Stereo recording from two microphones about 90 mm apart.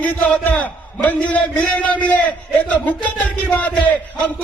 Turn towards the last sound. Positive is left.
turn(degrees=15)  # may be behind; listen again after turning